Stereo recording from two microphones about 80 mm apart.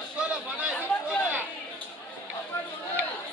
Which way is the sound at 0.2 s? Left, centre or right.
Centre.